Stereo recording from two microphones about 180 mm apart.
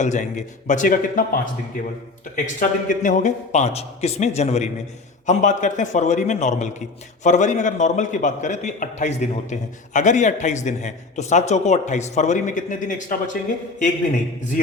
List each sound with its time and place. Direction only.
0.0 s a man's voice: 40° left (ahead or behind)